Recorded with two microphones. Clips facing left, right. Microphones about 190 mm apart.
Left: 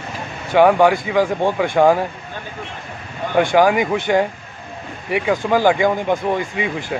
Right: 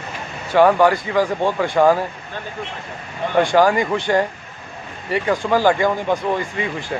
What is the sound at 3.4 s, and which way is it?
Speech, 10° left (ahead or behind).